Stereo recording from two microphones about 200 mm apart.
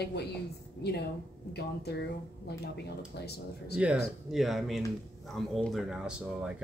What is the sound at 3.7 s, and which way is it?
Speech, 5° right (ahead or behind).